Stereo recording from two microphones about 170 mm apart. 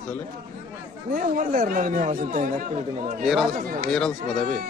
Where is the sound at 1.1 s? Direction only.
55° right (ahead or behind).